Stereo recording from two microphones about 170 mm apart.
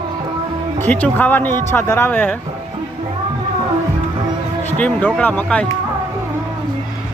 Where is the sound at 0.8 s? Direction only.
10° left (ahead or behind).